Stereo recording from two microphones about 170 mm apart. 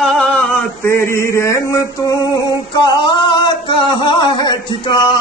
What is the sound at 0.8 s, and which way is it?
Mantra, 15° left (ahead or behind).